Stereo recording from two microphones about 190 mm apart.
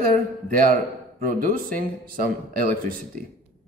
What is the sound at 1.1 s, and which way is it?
Speech, 50° right (ahead or behind).